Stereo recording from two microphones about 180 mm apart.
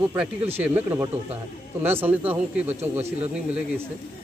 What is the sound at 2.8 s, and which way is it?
Speech, 35° right (ahead or behind).